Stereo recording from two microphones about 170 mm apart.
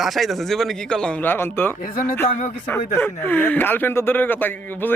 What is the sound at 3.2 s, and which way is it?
Speech, 10° left (ahead or behind).